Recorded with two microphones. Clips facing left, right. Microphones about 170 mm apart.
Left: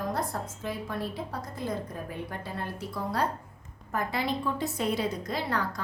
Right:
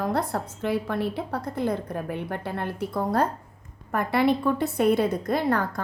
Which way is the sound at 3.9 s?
60° right (ahead or behind).